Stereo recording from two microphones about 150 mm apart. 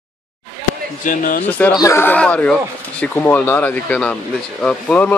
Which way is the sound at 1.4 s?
10° left (ahead or behind).